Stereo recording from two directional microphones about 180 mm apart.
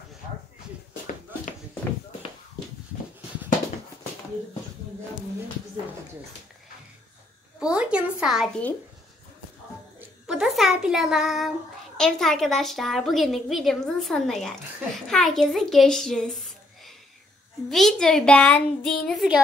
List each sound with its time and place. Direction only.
7.6 s a woman's voice: 5° right (ahead or behind)
9.9 s a child's voice: 5° right (ahead or behind)